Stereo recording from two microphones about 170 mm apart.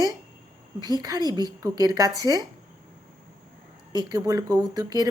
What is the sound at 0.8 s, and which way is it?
A woman's voice, 25° right (ahead or behind).